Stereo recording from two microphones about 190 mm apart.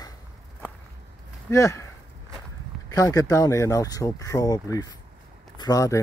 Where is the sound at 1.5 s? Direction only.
15° left (ahead or behind).